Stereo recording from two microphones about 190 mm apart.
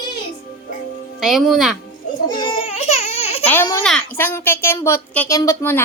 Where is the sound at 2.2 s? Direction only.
25° left (ahead or behind).